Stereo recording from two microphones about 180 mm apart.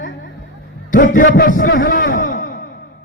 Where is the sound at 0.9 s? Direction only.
45° left (ahead or behind).